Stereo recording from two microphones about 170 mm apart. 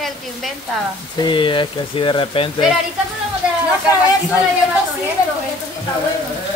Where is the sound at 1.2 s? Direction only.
30° left (ahead or behind).